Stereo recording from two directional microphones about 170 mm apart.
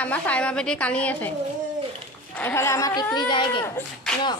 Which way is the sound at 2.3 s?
15° left (ahead or behind).